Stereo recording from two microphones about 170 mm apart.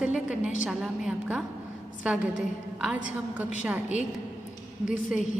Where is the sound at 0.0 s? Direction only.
5° right (ahead or behind).